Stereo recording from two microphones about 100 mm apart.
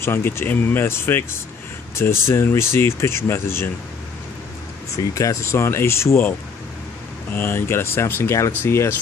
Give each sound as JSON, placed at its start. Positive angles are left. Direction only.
{"t": 0.0, "sound": "speech", "side_deg": 25}
{"t": 4.9, "sound": "speech", "side_deg": 35}
{"t": 7.3, "sound": "speech", "side_deg": 25}